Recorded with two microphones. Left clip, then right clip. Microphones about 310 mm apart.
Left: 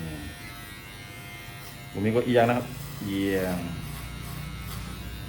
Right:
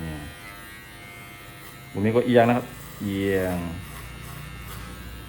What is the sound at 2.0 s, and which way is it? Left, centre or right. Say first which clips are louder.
Speech: right 3 dB; right.